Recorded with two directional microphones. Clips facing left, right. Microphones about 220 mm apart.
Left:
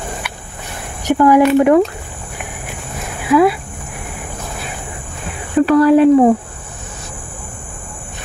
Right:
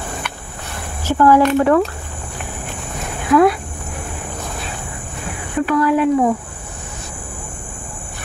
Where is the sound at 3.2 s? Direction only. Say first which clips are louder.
Left 1 dB; 5° left (ahead or behind).